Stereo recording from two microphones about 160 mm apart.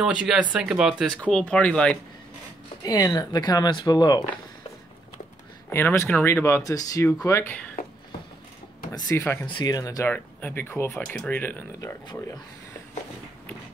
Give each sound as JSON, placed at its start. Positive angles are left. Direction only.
{"t": 0.0, "sound": "speech", "side_deg": -5}
{"t": 1.2, "sound": "speech", "side_deg": 10}
{"t": 2.8, "sound": "speech", "side_deg": 20}
{"t": 5.7, "sound": "speech", "side_deg": 15}
{"t": 9.2, "sound": "speech", "side_deg": 10}
{"t": 9.5, "sound": "speech", "side_deg": 25}